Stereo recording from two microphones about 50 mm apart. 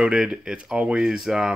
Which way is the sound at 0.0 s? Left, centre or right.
Centre.